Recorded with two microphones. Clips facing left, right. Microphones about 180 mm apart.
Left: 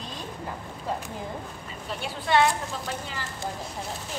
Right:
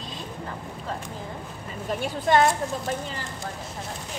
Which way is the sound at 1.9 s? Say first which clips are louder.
Right 4 dB; 45° right (ahead or behind).